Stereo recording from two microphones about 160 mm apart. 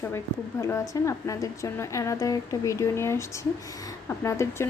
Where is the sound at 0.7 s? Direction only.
20° left (ahead or behind).